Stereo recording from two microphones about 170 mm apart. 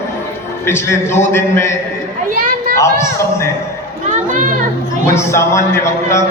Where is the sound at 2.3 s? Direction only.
55° right (ahead or behind).